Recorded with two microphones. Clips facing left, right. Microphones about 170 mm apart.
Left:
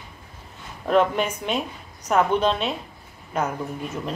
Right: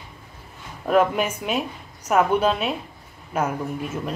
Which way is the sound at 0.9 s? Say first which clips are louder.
Right 1 dB; 5° right (ahead or behind).